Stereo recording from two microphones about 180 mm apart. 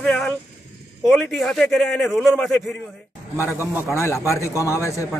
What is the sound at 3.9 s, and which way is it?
Speech, 15° left (ahead or behind).